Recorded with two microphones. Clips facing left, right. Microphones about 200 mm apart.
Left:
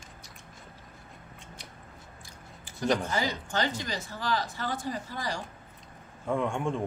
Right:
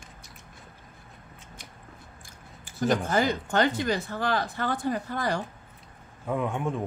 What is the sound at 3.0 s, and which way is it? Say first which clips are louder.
Speech: right 5 dB; 55° right (ahead or behind).